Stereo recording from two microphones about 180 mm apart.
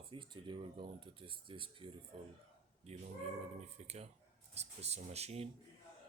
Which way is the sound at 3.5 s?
35° right (ahead or behind).